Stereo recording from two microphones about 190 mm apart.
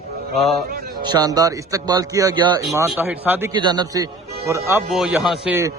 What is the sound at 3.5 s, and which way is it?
Speech, 25° right (ahead or behind).